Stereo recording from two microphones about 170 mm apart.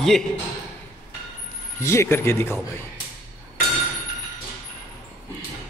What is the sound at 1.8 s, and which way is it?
Speech, 15° left (ahead or behind).